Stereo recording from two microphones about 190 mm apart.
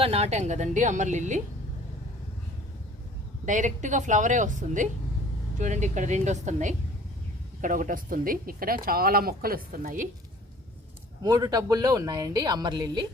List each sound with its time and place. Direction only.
0.0 s a woman's voice: 35° right (ahead or behind)
3.4 s a woman's voice: 40° right (ahead or behind)
11.2 s speech: 20° right (ahead or behind)